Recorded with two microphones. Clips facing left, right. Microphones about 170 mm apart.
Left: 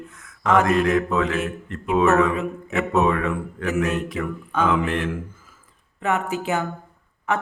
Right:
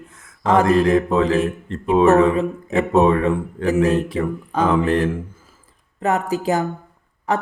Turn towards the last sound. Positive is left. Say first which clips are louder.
# right 3 dB
turn(degrees=-35)  # may be behind; listen again after turning